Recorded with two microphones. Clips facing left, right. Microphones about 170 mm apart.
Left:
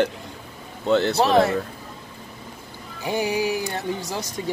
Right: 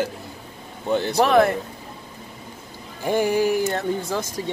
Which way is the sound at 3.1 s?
50° right (ahead or behind).